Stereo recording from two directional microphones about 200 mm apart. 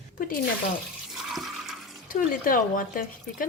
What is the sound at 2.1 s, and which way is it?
Speech, 45° left (ahead or behind).